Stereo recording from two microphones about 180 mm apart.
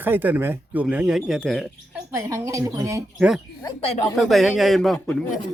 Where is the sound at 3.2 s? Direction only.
5° right (ahead or behind).